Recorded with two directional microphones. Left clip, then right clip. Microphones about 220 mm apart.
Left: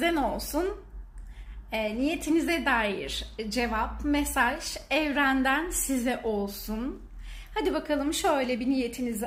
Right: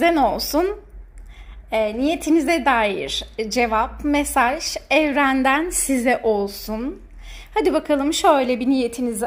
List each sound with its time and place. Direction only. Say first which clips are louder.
0.0 s a woman's voice: right 10 dB; 30° right (ahead or behind)
1.7 s a woman's voice: right 9 dB; 30° right (ahead or behind)